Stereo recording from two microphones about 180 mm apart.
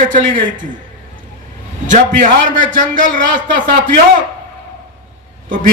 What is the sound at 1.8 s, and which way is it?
A man's voice, 45° right (ahead or behind).